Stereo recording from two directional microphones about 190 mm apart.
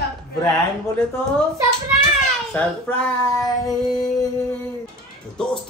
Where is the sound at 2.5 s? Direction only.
5° left (ahead or behind).